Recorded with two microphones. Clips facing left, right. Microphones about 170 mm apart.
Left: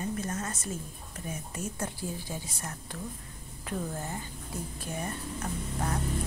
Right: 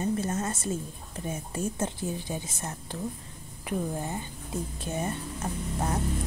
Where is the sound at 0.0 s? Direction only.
25° right (ahead or behind).